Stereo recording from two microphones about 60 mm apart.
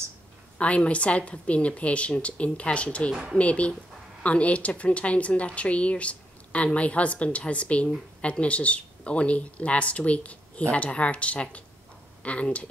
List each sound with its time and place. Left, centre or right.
0.6 s a woman's voice: left